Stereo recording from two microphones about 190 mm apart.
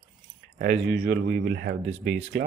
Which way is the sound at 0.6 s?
60° right (ahead or behind).